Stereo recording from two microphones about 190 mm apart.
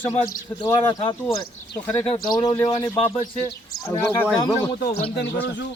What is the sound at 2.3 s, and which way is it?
Speech, 20° left (ahead or behind).